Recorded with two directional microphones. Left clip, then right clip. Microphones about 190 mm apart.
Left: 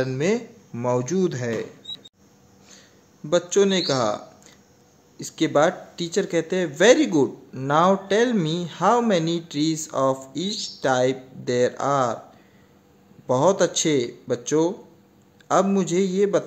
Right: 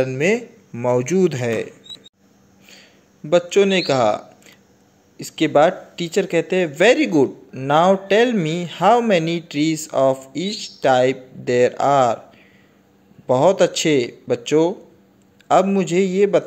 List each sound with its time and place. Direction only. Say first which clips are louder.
0.0 s a man's voice: right 5 dB; 10° right (ahead or behind)
2.8 s a sound: right 2 dB; 10° right (ahead or behind)
3.8 s a man's voice: right 6 dB; 15° right (ahead or behind)
10.1 s speech: right 3 dB; 40° left (ahead or behind)
10.8 s a man's voice: right 6 dB; 10° right (ahead or behind)
13.3 s a man's voice: right 4 dB; 10° right (ahead or behind)
15.4 s a man's voice: right 5 dB; 10° right (ahead or behind)